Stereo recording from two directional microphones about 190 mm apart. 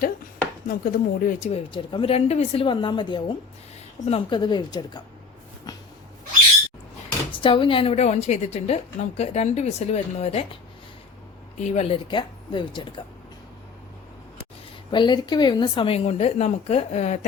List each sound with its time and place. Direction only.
0.7 s a woman's voice: 50° left (ahead or behind); by 5.0 s 20° left (ahead or behind)
7.3 s a woman's voice: 25° left (ahead or behind)
11.6 s speech: 35° left (ahead or behind)
14.8 s a woman's voice: 25° left (ahead or behind)